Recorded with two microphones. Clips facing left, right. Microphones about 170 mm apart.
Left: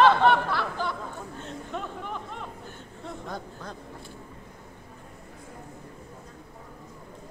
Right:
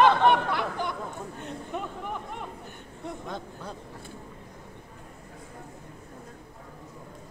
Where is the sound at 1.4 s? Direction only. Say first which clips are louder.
Right 1 dB; 15° right (ahead or behind).